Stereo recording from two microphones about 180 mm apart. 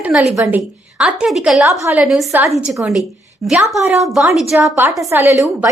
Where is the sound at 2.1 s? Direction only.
Centre (ahead or behind).